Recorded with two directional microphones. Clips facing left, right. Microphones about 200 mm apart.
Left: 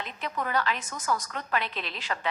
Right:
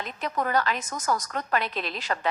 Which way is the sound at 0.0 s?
40° right (ahead or behind).